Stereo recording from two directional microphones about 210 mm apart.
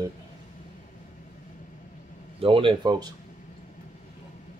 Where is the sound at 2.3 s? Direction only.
25° right (ahead or behind).